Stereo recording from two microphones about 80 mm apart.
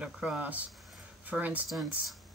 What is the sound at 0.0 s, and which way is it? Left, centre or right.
Speech, centre.